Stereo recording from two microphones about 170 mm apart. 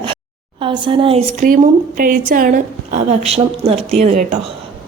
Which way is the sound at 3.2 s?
35° right (ahead or behind).